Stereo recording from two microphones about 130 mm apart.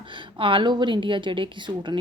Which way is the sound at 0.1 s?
40° right (ahead or behind).